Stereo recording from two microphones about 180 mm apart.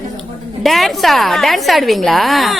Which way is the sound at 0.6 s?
Centre (ahead or behind).